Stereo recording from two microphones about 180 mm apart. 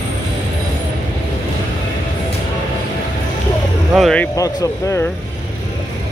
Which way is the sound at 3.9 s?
Centre (ahead or behind).